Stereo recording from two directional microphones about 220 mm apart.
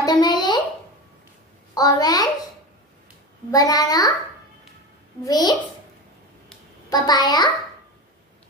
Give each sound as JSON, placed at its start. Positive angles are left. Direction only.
{"t": 0.0, "sound": "a sound", "side_deg": 20}
{"t": 1.8, "sound": "a child's voice", "side_deg": 15}
{"t": 3.5, "sound": "a child's voice", "side_deg": 15}
{"t": 5.2, "sound": "a child's voice", "side_deg": 15}
{"t": 6.9, "sound": "a child's voice", "side_deg": 20}